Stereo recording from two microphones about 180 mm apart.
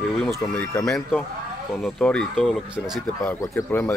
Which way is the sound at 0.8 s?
5° left (ahead or behind).